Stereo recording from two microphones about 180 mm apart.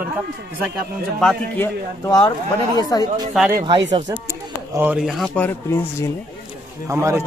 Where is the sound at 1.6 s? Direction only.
20° left (ahead or behind).